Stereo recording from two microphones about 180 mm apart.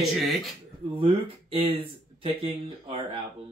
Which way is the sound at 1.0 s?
30° right (ahead or behind).